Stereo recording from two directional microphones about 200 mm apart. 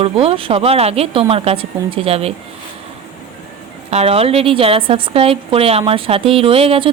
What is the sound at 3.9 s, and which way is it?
A woman's voice, 30° right (ahead or behind).